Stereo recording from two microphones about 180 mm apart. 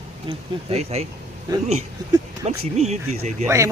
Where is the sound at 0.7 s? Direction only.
35° right (ahead or behind).